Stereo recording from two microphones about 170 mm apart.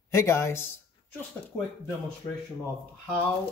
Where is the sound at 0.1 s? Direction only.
15° left (ahead or behind).